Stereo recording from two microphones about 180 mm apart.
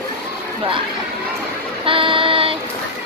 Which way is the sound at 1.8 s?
30° right (ahead or behind).